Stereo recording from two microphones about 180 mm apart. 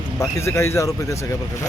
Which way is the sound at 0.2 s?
15° left (ahead or behind).